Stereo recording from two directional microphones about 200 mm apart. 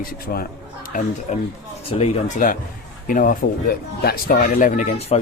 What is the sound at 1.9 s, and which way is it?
Speech, 30° left (ahead or behind).